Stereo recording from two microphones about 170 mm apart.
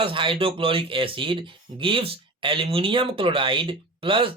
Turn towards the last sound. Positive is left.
turn(degrees=-30)  # may be behind; listen again after turning